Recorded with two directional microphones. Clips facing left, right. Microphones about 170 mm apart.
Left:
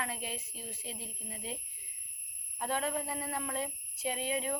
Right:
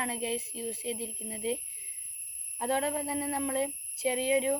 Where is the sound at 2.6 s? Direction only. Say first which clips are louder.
Right 4 dB; 30° right (ahead or behind).